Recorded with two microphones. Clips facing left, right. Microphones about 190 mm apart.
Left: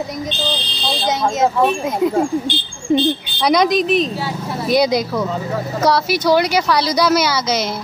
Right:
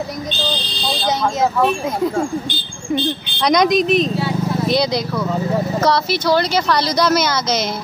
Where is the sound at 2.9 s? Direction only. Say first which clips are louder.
Left 5 dB; 25° left (ahead or behind).